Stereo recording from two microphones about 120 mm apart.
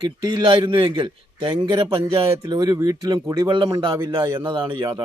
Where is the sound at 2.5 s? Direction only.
35° right (ahead or behind).